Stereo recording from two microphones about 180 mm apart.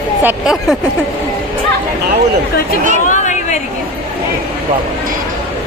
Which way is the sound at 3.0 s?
45° left (ahead or behind).